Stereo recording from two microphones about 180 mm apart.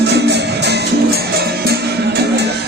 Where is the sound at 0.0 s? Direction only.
70° right (ahead or behind).